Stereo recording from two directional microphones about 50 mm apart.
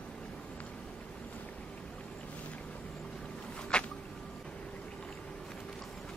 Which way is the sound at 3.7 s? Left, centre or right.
Centre.